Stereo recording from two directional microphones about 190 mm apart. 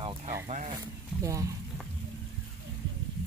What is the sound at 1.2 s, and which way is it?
Speech, 15° right (ahead or behind).